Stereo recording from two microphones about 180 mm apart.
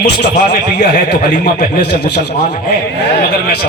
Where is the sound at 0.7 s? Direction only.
55° left (ahead or behind).